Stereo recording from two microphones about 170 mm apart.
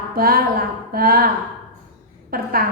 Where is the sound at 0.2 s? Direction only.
60° right (ahead or behind).